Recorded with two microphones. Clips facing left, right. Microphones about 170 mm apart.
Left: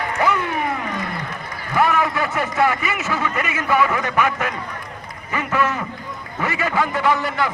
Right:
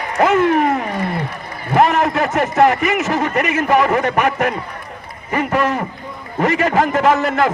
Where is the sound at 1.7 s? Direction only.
65° right (ahead or behind); by 2.5 s 45° right (ahead or behind).